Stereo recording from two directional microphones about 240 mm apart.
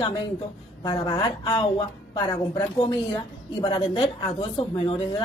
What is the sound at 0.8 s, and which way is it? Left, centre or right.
A woman's voice, centre.